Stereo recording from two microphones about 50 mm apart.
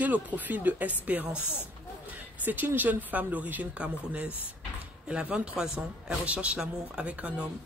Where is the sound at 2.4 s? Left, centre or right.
Right.